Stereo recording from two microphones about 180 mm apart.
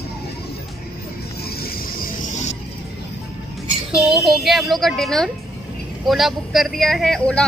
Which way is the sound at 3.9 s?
Centre (ahead or behind).